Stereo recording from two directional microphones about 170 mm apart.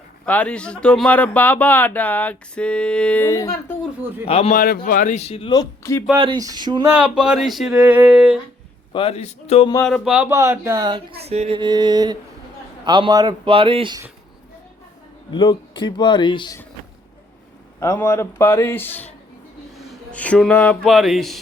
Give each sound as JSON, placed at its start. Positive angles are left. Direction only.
{"t": 0.3, "sound": "speech", "side_deg": 5}
{"t": 4.0, "sound": "speech", "side_deg": -10}
{"t": 4.3, "sound": "speech", "side_deg": 35}
{"t": 4.5, "sound": "speech", "side_deg": 55}
{"t": 5.5, "sound": "speech", "side_deg": 20}
{"t": 6.1, "sound": "a man's voice", "side_deg": -25}
{"t": 6.8, "sound": "speech", "side_deg": -10}
{"t": 8.9, "sound": "speech", "side_deg": 30}
{"t": 9.8, "sound": "speech", "side_deg": 0}
{"t": 10.2, "sound": "speech", "side_deg": -15}
{"t": 11.2, "sound": "a man's voice", "side_deg": -40}
{"t": 15.3, "sound": "speech", "side_deg": 30}
{"t": 17.7, "sound": "a man's voice", "side_deg": 15}